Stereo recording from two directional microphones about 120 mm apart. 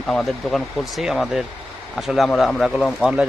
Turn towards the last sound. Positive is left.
turn(degrees=-5)  # may be behind; listen again after turning